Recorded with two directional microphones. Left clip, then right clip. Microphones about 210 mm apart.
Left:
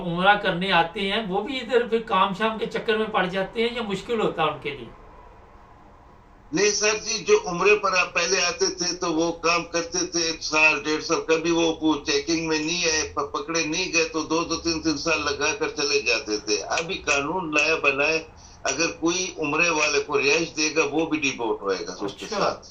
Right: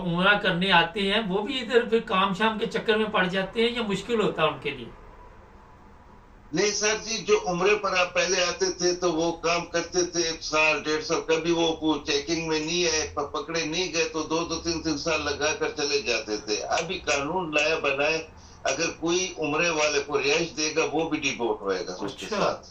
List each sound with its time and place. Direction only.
0.1 s speech: 5° left (ahead or behind)
6.5 s a man's voice: 25° left (ahead or behind)
22.0 s speech: 5° left (ahead or behind)